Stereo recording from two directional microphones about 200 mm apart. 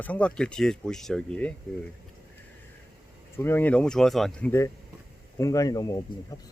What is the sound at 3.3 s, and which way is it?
Speech, 10° left (ahead or behind).